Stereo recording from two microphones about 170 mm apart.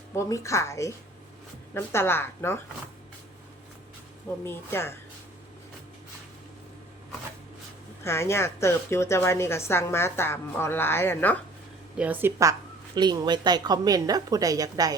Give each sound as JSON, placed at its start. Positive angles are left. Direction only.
{"t": 0.1, "sound": "a woman's voice", "side_deg": 15}
{"t": 4.4, "sound": "a woman's voice", "side_deg": 15}
{"t": 8.0, "sound": "a woman's voice", "side_deg": 15}
{"t": 11.9, "sound": "a woman's voice", "side_deg": -10}